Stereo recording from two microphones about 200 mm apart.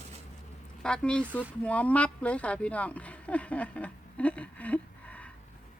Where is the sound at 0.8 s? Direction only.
5° left (ahead or behind).